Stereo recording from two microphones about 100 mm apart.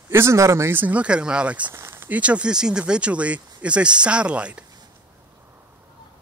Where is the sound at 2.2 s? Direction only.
10° right (ahead or behind).